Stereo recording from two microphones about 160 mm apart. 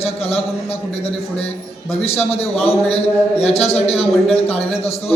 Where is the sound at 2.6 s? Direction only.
40° left (ahead or behind).